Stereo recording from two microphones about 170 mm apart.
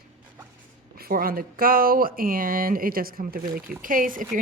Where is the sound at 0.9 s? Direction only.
60° right (ahead or behind).